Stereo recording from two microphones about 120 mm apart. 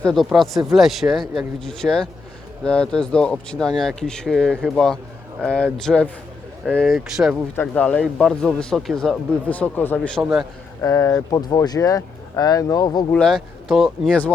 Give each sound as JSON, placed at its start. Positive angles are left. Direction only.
{"t": 0.0, "sound": "speech", "side_deg": 0}
{"t": 7.5, "sound": "speech", "side_deg": 15}
{"t": 10.2, "sound": "speech", "side_deg": -5}
{"t": 10.8, "sound": "speech", "side_deg": 25}
{"t": 13.2, "sound": "speech", "side_deg": 0}